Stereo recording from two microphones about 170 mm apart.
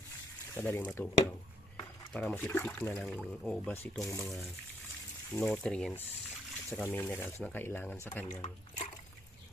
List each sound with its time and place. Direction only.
0.5 s speech: 10° left (ahead or behind)
8.3 s speech: 45° left (ahead or behind)